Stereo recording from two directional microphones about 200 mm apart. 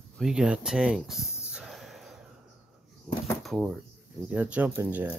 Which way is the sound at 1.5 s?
Centre (ahead or behind).